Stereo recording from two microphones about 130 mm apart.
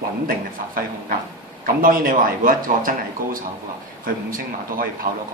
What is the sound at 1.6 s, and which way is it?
Speech, 90° right.